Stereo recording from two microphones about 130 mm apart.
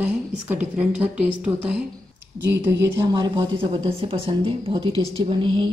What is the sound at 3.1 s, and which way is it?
A woman's voice, 35° right (ahead or behind).